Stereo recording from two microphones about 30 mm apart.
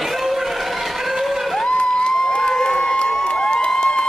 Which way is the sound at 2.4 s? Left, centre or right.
Left.